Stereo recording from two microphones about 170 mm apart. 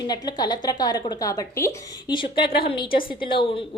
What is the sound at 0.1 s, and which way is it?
A woman's voice, 25° left (ahead or behind).